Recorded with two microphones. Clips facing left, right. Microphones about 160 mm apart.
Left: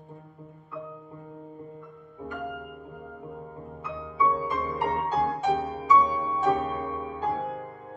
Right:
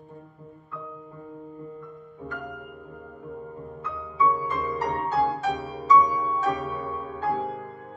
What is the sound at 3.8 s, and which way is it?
Music, 10° left (ahead or behind).